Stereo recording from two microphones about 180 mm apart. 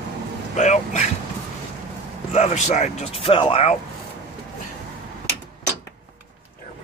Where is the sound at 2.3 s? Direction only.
40° left (ahead or behind).